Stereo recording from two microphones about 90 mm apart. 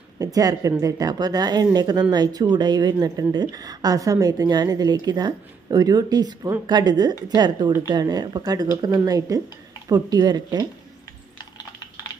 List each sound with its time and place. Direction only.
0.2 s a woman's voice: 45° right (ahead or behind)